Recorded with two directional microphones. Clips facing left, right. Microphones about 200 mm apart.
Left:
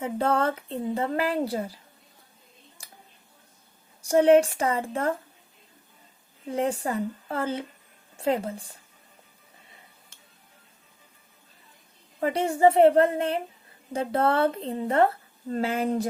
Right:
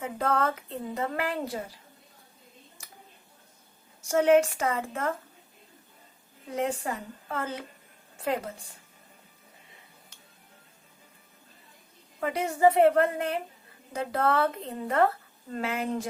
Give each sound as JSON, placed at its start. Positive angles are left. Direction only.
{"t": 0.0, "sound": "a woman's voice", "side_deg": 30}
{"t": 2.8, "sound": "a sound", "side_deg": 30}
{"t": 4.1, "sound": "a woman's voice", "side_deg": 30}
{"t": 6.6, "sound": "a woman's voice", "side_deg": 35}
{"t": 12.2, "sound": "a woman's voice", "side_deg": 30}